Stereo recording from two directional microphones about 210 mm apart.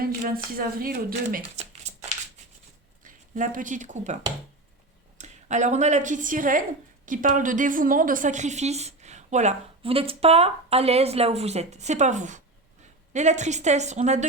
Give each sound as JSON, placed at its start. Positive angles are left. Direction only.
{"t": 0.0, "sound": "speech", "side_deg": -45}
{"t": 1.4, "sound": "a sound", "side_deg": -30}
{"t": 3.0, "sound": "a woman's voice", "side_deg": -40}